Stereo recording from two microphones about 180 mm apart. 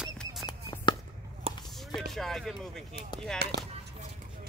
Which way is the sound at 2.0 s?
Centre (ahead or behind).